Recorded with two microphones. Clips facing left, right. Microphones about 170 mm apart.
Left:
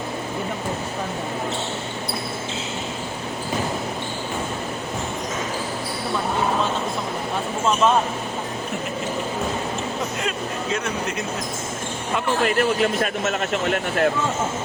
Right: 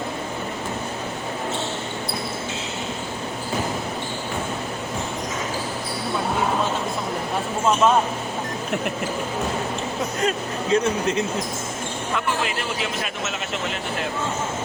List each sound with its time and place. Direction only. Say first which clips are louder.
10.2 s speech: right 3 dB; 35° right (ahead or behind)
12.4 s speech: left 7 dB; 50° left (ahead or behind)